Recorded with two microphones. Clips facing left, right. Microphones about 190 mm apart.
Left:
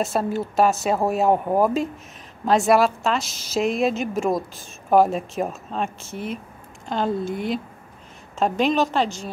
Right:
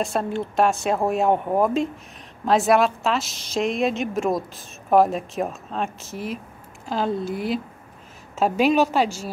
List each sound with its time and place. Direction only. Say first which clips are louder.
0.0 s a woman's voice: left 1 dB; 5° left (ahead or behind)